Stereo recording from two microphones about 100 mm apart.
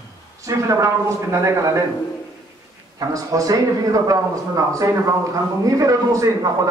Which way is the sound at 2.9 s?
35° right (ahead or behind).